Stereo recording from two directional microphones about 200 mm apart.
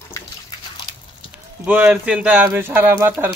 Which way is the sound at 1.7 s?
5° right (ahead or behind).